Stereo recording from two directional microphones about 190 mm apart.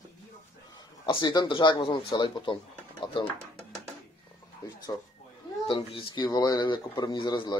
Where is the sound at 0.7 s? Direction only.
20° left (ahead or behind).